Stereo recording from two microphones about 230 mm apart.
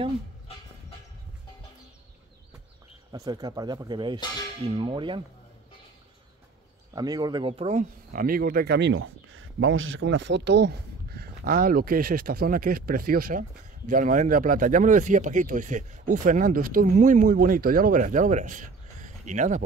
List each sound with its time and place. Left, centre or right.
3.1 s speech: centre
7.0 s speech: centre